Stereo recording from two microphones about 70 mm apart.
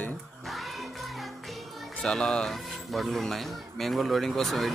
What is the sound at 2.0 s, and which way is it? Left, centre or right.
Speech, centre.